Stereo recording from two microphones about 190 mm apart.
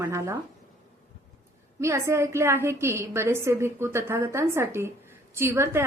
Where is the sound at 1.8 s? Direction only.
15° right (ahead or behind).